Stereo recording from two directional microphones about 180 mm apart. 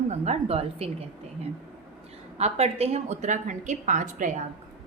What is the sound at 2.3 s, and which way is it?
A woman's voice, 35° right (ahead or behind).